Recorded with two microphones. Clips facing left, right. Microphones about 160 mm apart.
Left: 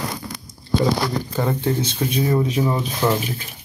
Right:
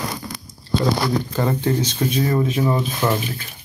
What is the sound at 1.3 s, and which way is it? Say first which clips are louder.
Speech: right 1 dB; 5° left (ahead or behind).